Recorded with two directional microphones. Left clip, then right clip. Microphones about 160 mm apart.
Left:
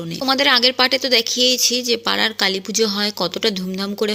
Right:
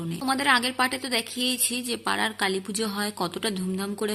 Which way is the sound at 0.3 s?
25° left (ahead or behind).